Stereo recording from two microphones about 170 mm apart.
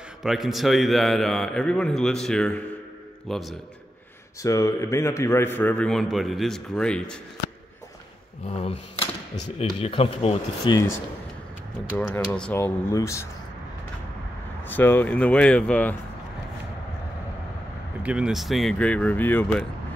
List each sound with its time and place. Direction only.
0.2 s a man's voice: centre (ahead or behind)
4.4 s a man's voice: 20° left (ahead or behind)
8.5 s speech: 35° left (ahead or behind)
12.0 s a man's voice: 10° left (ahead or behind)
14.7 s a man's voice: 10° left (ahead or behind)
18.0 s a man's voice: 5° right (ahead or behind); by 19.6 s 10° left (ahead or behind)